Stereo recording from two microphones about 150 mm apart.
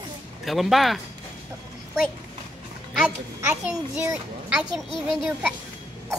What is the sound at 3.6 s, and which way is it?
A child's voice, 10° right (ahead or behind).